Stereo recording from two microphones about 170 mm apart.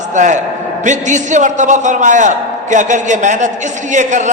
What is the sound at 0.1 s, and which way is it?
A man's voice, 45° right (ahead or behind).